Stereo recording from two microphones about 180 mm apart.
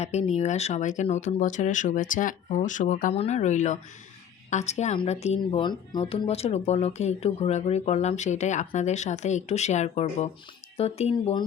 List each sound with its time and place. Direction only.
0.0 s speech: 35° left (ahead or behind)